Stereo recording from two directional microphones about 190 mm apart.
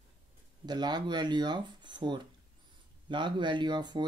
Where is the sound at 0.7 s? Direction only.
20° right (ahead or behind).